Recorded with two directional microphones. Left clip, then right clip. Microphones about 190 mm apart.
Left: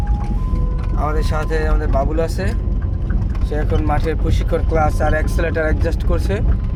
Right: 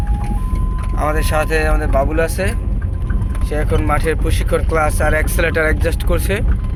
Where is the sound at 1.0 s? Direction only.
10° right (ahead or behind).